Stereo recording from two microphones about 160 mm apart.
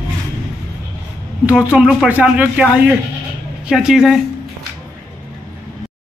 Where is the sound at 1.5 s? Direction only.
5° right (ahead or behind).